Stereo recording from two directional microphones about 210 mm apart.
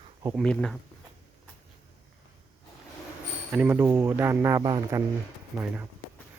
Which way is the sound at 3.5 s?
10° right (ahead or behind).